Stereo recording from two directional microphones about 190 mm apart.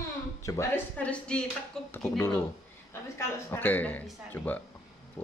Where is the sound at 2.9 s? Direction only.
15° left (ahead or behind).